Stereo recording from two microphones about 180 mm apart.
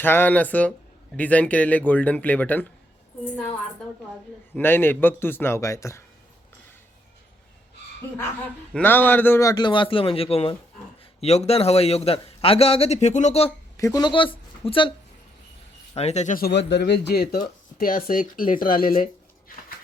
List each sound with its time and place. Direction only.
0.0 s speech: 10° left (ahead or behind)
4.5 s speech: 10° left (ahead or behind)
8.7 s a man's voice: 10° left (ahead or behind); by 13.5 s 40° left (ahead or behind)
13.7 s speech: 20° left (ahead or behind)
16.0 s a man's voice: 35° left (ahead or behind)
16.5 s speech: 75° left (ahead or behind); by 19.0 s 50° left (ahead or behind)